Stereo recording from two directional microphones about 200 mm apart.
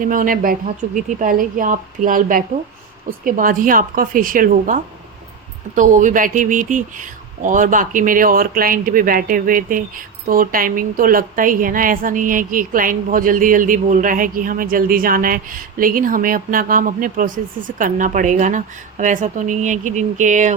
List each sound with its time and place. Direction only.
0.0 s a woman's voice: 45° right (ahead or behind)